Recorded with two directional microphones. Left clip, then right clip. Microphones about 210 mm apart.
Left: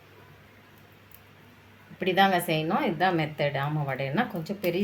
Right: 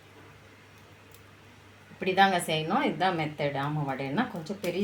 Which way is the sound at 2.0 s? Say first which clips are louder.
Left 1 dB; 25° left (ahead or behind).